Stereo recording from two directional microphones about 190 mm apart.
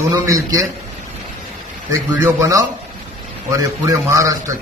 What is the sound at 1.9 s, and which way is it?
A man's voice, 15° right (ahead or behind).